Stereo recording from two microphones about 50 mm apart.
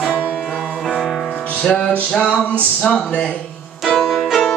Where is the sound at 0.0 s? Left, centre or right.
Centre.